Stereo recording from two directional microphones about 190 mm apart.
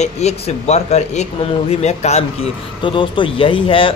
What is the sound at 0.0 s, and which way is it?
Speech, 35° left (ahead or behind).